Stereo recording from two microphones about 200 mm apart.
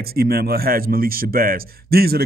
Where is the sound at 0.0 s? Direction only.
50° right (ahead or behind).